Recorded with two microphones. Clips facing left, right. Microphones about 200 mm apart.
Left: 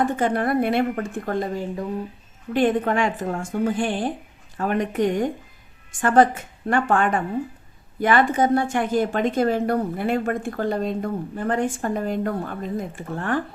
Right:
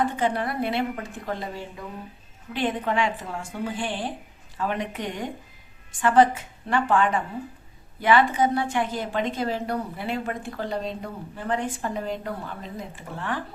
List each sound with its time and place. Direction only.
0.0 s a woman's voice: 50° left (ahead or behind)